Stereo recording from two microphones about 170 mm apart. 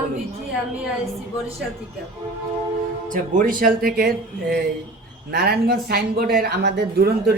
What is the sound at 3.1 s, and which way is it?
Speech, 50° right (ahead or behind).